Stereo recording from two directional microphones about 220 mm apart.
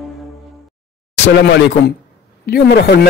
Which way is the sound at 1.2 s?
50° left (ahead or behind).